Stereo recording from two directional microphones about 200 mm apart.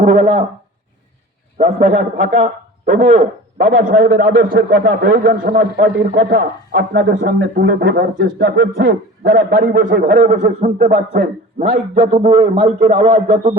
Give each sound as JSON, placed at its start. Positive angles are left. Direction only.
{"t": 0.0, "sound": "a man's voice", "side_deg": -35}
{"t": 1.5, "sound": "speech", "side_deg": -35}
{"t": 4.0, "sound": "a man's voice", "side_deg": -50}